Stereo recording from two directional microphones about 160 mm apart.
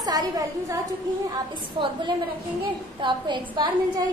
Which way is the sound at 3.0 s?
30° right (ahead or behind).